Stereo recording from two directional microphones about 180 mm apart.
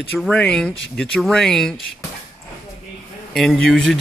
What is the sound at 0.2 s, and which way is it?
Speech, 5° left (ahead or behind).